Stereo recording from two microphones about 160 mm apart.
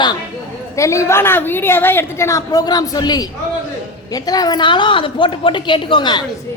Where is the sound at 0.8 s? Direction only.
20° left (ahead or behind).